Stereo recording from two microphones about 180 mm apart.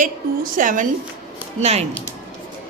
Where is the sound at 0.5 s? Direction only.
50° right (ahead or behind).